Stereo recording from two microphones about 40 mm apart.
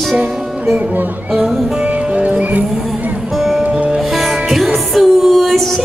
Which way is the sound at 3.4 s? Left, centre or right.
Centre.